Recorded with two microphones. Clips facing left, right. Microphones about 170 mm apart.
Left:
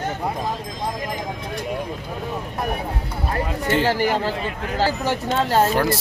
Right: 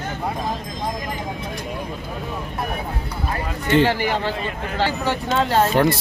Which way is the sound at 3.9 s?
45° left (ahead or behind).